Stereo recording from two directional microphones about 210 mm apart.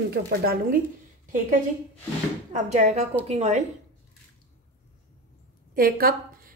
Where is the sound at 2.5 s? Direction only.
35° right (ahead or behind).